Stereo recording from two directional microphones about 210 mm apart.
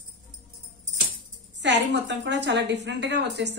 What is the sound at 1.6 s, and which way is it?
A woman's voice, 55° right (ahead or behind).